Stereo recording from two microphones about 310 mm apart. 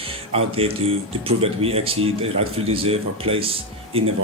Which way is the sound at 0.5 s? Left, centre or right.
Centre.